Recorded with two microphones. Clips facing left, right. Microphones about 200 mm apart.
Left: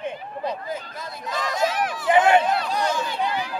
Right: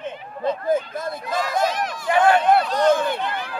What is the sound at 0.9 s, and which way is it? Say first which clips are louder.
Speech: right 6 dB; 50° right (ahead or behind).